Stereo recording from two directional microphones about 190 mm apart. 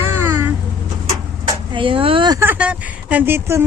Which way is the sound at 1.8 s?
25° right (ahead or behind).